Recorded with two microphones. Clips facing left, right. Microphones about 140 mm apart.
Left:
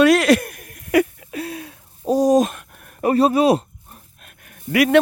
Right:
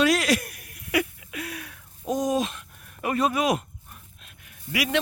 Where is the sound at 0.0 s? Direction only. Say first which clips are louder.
Left 8 dB; 60° left (ahead or behind).